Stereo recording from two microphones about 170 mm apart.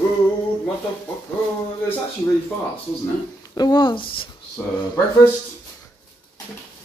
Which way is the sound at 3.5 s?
25° left (ahead or behind).